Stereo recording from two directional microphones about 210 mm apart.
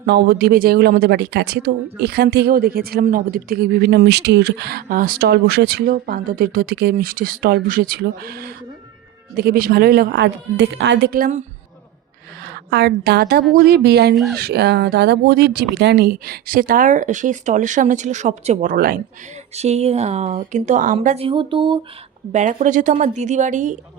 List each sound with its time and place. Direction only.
0.0 s speech: 50° right (ahead or behind)
12.7 s speech: 50° right (ahead or behind)
19.5 s speech: 30° right (ahead or behind)
22.3 s speech: 35° right (ahead or behind)